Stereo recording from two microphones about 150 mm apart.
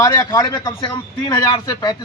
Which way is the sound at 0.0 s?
25° left (ahead or behind).